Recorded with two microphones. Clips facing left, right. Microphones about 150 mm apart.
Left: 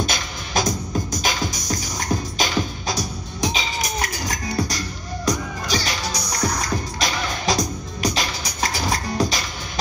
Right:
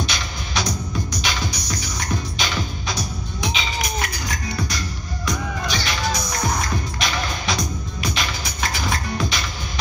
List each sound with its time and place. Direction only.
0.0 s music: 45° left (ahead or behind)